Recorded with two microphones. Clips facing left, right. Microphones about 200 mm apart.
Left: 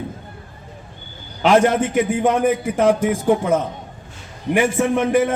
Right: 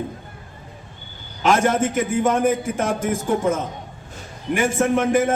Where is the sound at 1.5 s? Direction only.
45° right (ahead or behind).